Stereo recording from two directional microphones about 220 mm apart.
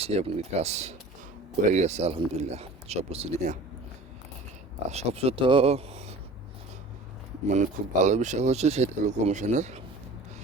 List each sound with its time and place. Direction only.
0.0 s speech: 25° right (ahead or behind)
4.9 s speech: 30° right (ahead or behind)
7.4 s speech: 30° right (ahead or behind)